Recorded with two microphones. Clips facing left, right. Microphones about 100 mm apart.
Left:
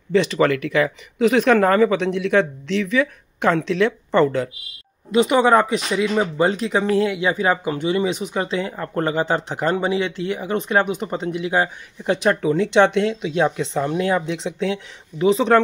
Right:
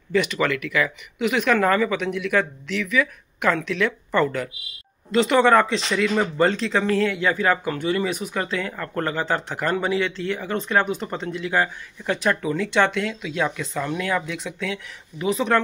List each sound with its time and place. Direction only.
0.1 s speech: 30° left (ahead or behind)
5.1 s speech: 15° left (ahead or behind)